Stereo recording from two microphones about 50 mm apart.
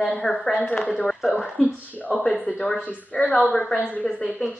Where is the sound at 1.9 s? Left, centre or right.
Left.